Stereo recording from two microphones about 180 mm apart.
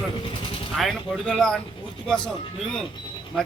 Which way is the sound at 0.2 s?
30° left (ahead or behind).